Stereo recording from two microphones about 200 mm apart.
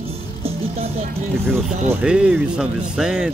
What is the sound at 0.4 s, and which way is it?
Music, 30° right (ahead or behind).